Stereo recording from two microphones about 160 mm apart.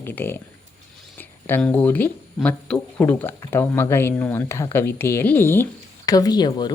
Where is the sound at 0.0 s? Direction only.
10° left (ahead or behind).